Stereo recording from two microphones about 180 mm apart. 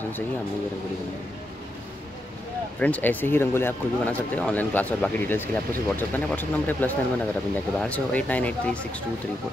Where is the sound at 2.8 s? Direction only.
10° left (ahead or behind).